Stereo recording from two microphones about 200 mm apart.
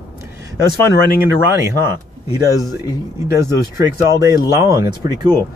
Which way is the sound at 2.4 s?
15° right (ahead or behind).